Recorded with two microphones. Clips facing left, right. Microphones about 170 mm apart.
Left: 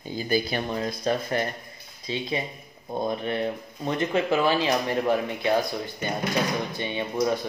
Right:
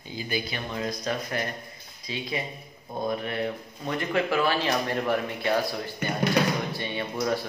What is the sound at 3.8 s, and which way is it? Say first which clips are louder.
Speech: left 2 dB; 20° left (ahead or behind).